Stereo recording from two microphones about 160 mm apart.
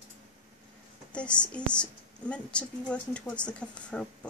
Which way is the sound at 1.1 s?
5° left (ahead or behind).